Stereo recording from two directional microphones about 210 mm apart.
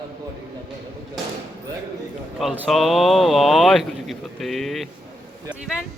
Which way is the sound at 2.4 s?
Centre (ahead or behind).